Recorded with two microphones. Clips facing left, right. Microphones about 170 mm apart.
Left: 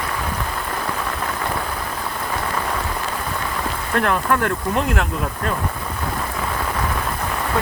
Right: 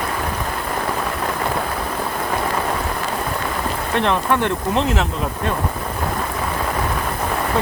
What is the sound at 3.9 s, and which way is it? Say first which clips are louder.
Speech: right 1 dB; 20° right (ahead or behind).